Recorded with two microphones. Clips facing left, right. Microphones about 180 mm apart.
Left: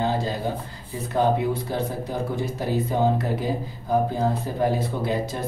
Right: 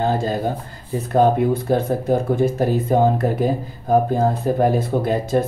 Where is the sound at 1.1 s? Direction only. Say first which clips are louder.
Right 6 dB; 50° right (ahead or behind).